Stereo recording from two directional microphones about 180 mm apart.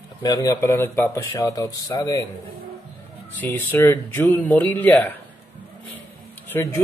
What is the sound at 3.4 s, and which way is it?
Speech, 10° left (ahead or behind).